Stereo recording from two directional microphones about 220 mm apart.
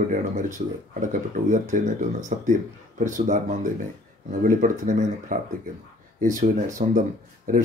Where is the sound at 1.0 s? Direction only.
35° right (ahead or behind).